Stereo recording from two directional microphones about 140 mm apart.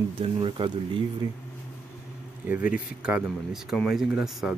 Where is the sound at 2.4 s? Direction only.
10° right (ahead or behind).